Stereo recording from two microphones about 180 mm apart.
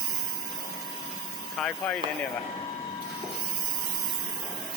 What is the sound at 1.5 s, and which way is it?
Speech, centre (ahead or behind).